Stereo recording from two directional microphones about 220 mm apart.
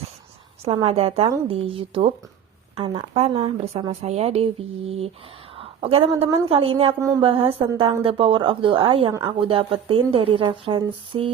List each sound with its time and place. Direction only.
0.6 s a woman's voice: 25° right (ahead or behind)